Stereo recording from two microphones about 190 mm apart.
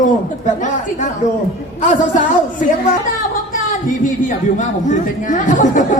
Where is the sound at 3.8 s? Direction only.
45° left (ahead or behind).